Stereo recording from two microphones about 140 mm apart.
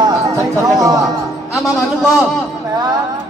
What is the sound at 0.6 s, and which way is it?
Speech, 25° right (ahead or behind).